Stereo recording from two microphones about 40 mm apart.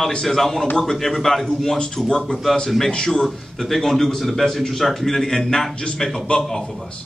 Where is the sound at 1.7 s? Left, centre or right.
Centre.